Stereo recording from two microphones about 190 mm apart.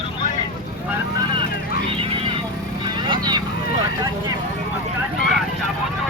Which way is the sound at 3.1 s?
20° right (ahead or behind).